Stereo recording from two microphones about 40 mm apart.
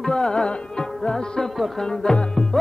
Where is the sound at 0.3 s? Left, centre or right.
Centre.